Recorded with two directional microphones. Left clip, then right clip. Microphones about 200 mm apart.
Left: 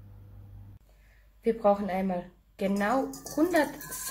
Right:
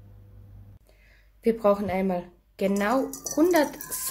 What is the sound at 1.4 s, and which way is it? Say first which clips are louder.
A woman's voice: right 2 dB; 25° right (ahead or behind).